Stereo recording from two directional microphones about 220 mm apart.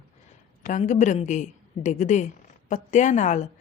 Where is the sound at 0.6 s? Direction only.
35° left (ahead or behind).